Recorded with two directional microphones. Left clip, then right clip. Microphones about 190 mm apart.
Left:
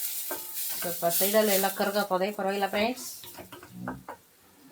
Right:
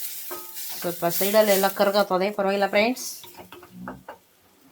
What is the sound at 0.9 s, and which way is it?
Speech, 55° right (ahead or behind).